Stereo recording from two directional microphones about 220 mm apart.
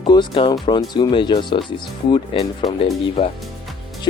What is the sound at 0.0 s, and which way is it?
Speech, 20° left (ahead or behind).